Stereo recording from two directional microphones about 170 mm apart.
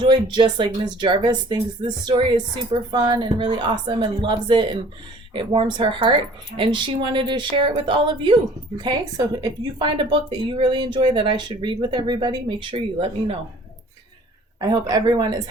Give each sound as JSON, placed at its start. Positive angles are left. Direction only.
{"t": 0.0, "sound": "speech", "side_deg": -25}
{"t": 14.6, "sound": "speech", "side_deg": -20}